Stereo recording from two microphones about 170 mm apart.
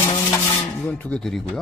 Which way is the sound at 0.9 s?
10° left (ahead or behind).